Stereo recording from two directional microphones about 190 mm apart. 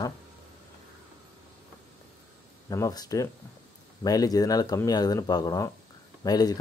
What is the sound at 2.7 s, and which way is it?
Speech, 20° left (ahead or behind).